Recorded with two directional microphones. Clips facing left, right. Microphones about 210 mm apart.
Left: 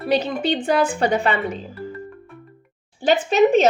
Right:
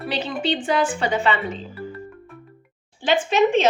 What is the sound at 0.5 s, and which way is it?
Speech, 60° left (ahead or behind).